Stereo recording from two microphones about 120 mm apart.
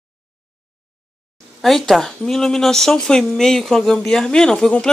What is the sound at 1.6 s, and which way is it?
Speech, centre (ahead or behind).